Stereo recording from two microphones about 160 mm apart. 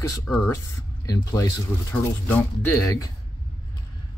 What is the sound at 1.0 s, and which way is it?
Speech, 20° left (ahead or behind).